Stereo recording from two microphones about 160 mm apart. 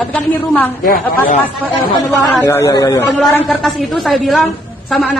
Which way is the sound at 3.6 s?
Centre (ahead or behind).